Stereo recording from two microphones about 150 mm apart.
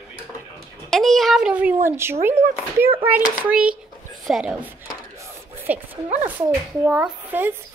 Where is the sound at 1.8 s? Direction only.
15° right (ahead or behind).